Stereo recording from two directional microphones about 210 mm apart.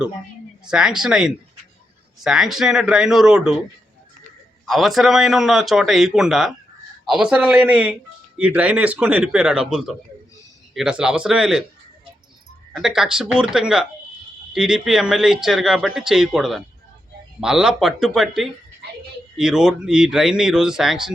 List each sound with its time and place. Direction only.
0.7 s speech: 5° right (ahead or behind)
4.6 s speech: centre (ahead or behind)
12.7 s speech: centre (ahead or behind)